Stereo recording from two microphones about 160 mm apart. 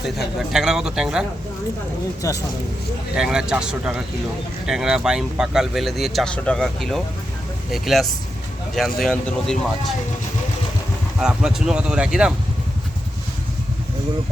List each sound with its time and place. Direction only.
0.0 s speech: centre (ahead or behind)
2.2 s speech: 20° left (ahead or behind)
3.2 s speech: 5° right (ahead or behind)
11.2 s speech: 5° right (ahead or behind)